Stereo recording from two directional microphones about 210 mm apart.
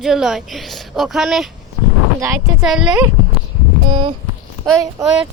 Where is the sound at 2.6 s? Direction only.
Centre (ahead or behind).